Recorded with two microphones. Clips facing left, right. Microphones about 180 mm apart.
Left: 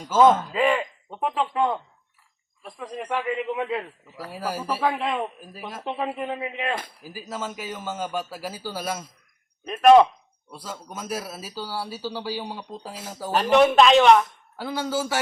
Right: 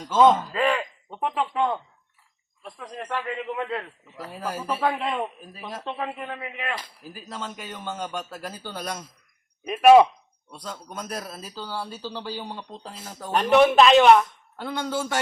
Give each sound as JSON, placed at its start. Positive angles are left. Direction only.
{"t": 0.1, "sound": "a man's voice", "side_deg": 5}
{"t": 3.2, "sound": "speech", "side_deg": 15}
{"t": 5.8, "sound": "a man's voice", "side_deg": 15}
{"t": 7.0, "sound": "speech", "side_deg": 5}
{"t": 9.6, "sound": "a man's voice", "side_deg": -5}
{"t": 10.5, "sound": "speech", "side_deg": 5}